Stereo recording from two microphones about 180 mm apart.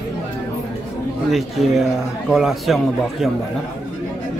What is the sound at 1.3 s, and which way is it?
A man's voice, centre (ahead or behind).